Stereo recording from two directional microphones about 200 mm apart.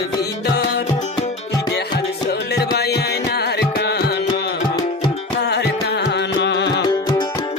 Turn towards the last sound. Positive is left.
turn(degrees=60)  # may be behind; listen again after turning